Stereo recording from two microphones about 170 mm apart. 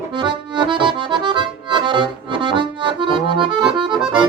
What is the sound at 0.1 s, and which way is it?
Accordion, 30° right (ahead or behind).